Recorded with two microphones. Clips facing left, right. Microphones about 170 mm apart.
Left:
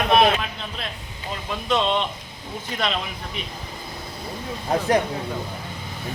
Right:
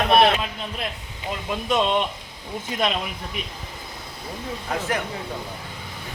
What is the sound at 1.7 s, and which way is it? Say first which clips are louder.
Speech: even; 10° right (ahead or behind).